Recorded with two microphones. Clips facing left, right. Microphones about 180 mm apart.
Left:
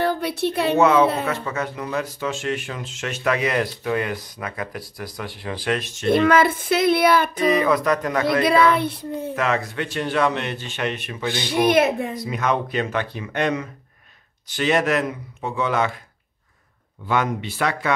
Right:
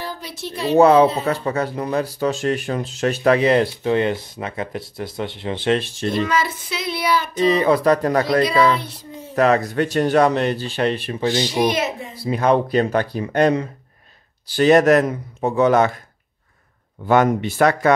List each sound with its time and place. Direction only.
0.0 s a woman's voice: 60° left (ahead or behind)
0.7 s speech: 35° right (ahead or behind)
6.1 s speech: 55° left (ahead or behind)
7.3 s speech: 30° right (ahead or behind)
8.5 s speech: 55° left (ahead or behind)
9.3 s speech: 35° right (ahead or behind)
11.3 s speech: 55° left (ahead or behind)
12.2 s speech: 30° right (ahead or behind)
17.0 s speech: 45° right (ahead or behind)